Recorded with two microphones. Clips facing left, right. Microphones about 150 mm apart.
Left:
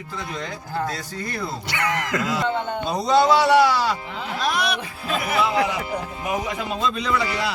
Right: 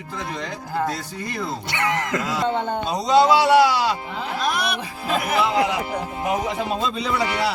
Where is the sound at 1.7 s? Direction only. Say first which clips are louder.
Right 1 dB; 20° right (ahead or behind).